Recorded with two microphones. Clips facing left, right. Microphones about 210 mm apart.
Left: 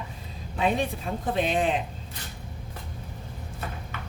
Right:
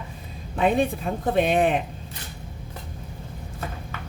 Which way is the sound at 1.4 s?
60° right (ahead or behind).